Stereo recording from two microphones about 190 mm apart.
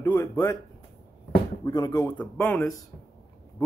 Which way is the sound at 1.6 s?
20° left (ahead or behind).